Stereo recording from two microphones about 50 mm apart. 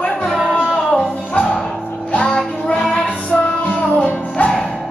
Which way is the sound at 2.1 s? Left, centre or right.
Left.